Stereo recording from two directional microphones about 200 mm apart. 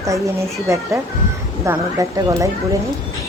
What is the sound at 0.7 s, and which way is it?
A woman's voice, 15° right (ahead or behind).